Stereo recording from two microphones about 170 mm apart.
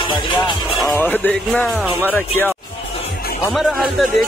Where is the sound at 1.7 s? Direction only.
10° right (ahead or behind).